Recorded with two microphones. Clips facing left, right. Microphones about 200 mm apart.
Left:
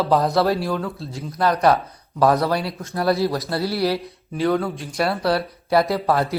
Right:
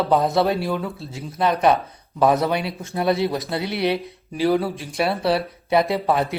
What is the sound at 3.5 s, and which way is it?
Speech, 20° right (ahead or behind).